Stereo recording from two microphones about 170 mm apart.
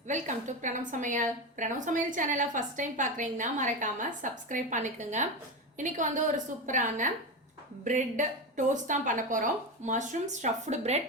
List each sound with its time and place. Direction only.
0.1 s a woman's voice: 45° right (ahead or behind)